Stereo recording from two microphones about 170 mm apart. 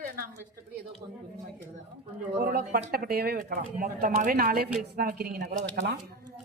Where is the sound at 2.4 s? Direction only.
65° right (ahead or behind).